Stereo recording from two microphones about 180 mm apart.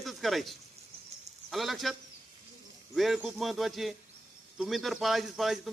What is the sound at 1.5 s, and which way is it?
A man's voice, centre (ahead or behind).